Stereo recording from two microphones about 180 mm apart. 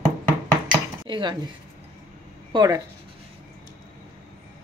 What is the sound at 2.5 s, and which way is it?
Speech, 20° right (ahead or behind).